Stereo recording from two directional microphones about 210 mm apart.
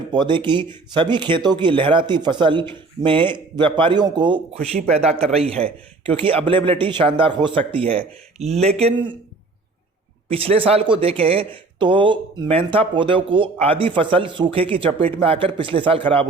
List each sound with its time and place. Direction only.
0.1 s speech: 20° right (ahead or behind)
10.2 s speech: 25° right (ahead or behind)